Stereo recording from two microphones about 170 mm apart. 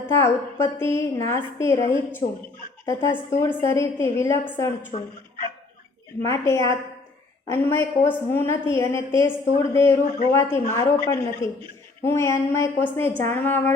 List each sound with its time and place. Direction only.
0.1 s a woman's voice: 15° left (ahead or behind)
2.8 s a woman's voice: 15° left (ahead or behind)
4.9 s speech: 40° left (ahead or behind)
6.2 s a woman's voice: 15° left (ahead or behind)